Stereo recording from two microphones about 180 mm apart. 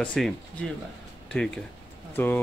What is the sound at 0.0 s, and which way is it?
Speech, 5° left (ahead or behind).